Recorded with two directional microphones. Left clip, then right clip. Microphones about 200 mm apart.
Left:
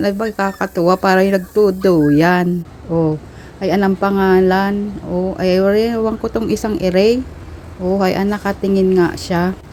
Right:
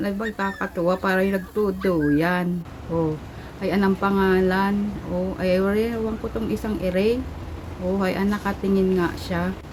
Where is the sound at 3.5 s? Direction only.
30° left (ahead or behind).